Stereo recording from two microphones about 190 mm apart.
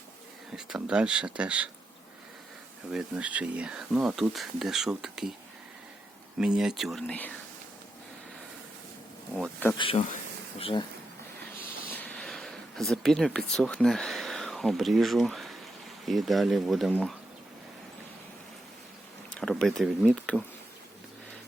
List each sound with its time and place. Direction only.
0.5 s speech: 5° right (ahead or behind)
2.9 s speech: 5° right (ahead or behind)
6.4 s speech: 5° right (ahead or behind)
9.4 s speech: 10° left (ahead or behind)
9.7 s speech: 25° left (ahead or behind)
11.9 s a sound: 10° left (ahead or behind)
16.0 s speech: centre (ahead or behind)
19.3 s speech: 5° left (ahead or behind)